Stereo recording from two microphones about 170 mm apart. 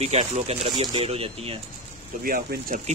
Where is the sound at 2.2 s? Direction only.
55° right (ahead or behind).